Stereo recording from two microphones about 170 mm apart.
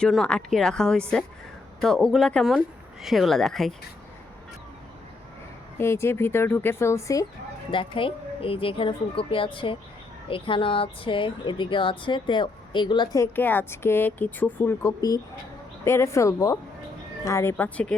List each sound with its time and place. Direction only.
0.0 s speech: 5° left (ahead or behind)
5.7 s speech: 15° left (ahead or behind)
7.7 s speech: 30° left (ahead or behind)
13.3 s speech: 10° left (ahead or behind)